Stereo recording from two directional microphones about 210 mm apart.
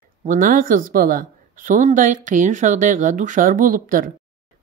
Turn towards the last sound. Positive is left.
turn(degrees=-40)  # may be behind; listen again after turning